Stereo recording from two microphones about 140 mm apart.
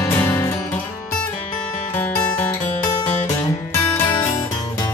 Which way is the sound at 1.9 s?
10° left (ahead or behind).